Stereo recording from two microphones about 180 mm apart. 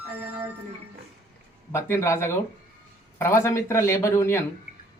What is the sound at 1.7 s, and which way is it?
Speech, 15° left (ahead or behind).